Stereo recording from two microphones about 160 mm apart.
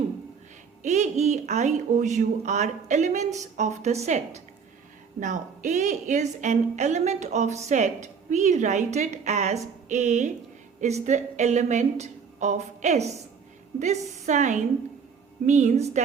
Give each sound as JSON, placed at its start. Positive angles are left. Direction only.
{"t": 0.8, "sound": "a woman's voice", "side_deg": -50}